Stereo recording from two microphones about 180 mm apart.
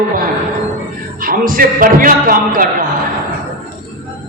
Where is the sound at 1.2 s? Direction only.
50° right (ahead or behind).